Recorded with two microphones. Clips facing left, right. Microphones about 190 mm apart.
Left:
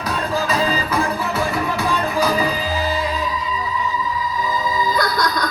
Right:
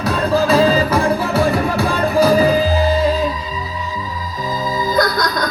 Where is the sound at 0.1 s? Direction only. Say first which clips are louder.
Right 7 dB; 40° right (ahead or behind).